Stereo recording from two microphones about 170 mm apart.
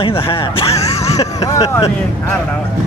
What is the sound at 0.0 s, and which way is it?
Speech, 30° left (ahead or behind).